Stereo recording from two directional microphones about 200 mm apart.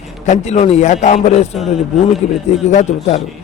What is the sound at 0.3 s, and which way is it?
A man's voice, 35° left (ahead or behind).